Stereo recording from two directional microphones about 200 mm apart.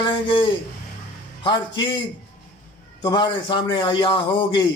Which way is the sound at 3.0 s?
25° left (ahead or behind).